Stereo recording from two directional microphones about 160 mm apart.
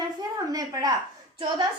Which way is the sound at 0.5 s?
25° right (ahead or behind).